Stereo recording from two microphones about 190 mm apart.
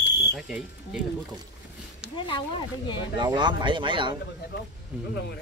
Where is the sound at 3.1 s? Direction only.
25° right (ahead or behind).